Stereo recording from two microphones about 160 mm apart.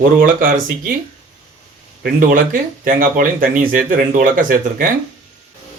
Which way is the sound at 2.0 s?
60° right (ahead or behind).